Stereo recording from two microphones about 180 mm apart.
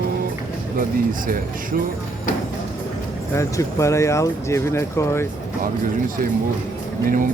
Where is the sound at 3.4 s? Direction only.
15° left (ahead or behind).